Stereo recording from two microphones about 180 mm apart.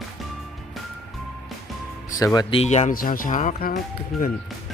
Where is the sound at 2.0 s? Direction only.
20° left (ahead or behind); by 3.8 s 50° left (ahead or behind).